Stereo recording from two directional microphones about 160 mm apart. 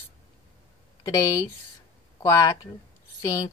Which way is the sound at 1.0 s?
20° left (ahead or behind).